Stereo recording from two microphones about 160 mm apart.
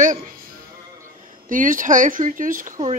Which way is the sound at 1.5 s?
55° right (ahead or behind).